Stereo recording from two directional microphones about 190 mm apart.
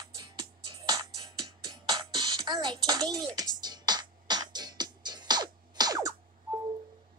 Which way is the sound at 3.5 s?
20° right (ahead or behind).